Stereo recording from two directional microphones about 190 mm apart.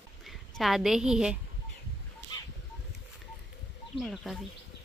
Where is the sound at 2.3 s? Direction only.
25° left (ahead or behind).